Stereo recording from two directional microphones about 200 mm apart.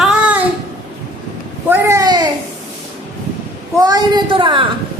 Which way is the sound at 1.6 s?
10° right (ahead or behind).